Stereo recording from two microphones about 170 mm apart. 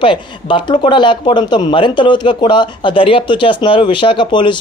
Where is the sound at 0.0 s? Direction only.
30° left (ahead or behind).